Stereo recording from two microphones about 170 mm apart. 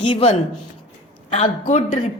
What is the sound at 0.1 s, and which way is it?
A woman's voice, 35° left (ahead or behind).